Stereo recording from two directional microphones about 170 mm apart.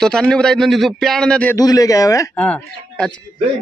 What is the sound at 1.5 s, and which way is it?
Speech, 20° left (ahead or behind).